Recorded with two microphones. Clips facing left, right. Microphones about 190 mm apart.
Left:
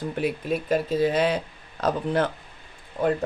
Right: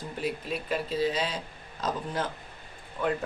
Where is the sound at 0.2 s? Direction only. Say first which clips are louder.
Left 5 dB; 45° left (ahead or behind); by 2.3 s 65° left (ahead or behind).